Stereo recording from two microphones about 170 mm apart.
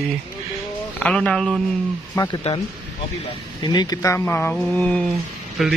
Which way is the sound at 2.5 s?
40° left (ahead or behind).